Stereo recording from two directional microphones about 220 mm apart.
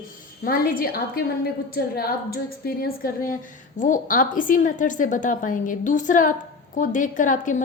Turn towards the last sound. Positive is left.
turn(degrees=35)  # may be behind; listen again after turning